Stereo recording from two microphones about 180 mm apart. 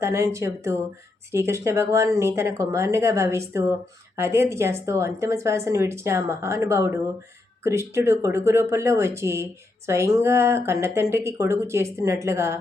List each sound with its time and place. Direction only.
0.0 s speech: 15° right (ahead or behind)